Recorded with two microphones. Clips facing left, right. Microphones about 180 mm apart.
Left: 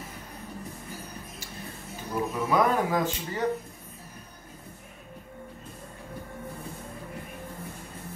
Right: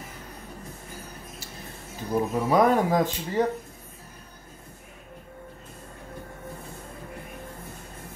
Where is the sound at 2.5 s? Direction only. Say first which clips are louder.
Right 4 dB; 35° right (ahead or behind).